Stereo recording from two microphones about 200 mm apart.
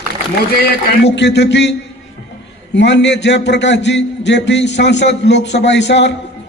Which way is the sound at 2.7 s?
60° left (ahead or behind).